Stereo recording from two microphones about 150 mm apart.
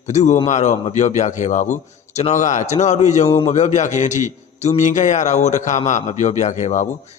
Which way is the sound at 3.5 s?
50° left (ahead or behind).